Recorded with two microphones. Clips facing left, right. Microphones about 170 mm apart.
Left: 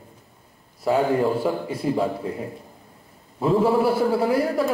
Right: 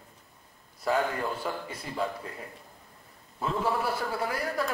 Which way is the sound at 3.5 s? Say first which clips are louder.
Left 11 dB; 30° left (ahead or behind).